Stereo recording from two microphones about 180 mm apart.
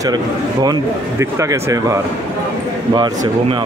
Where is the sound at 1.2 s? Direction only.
15° right (ahead or behind).